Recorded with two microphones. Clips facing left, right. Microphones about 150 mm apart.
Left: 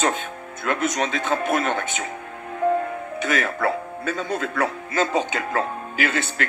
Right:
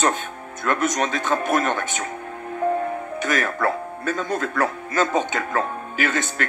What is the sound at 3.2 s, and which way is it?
Speech, 50° right (ahead or behind).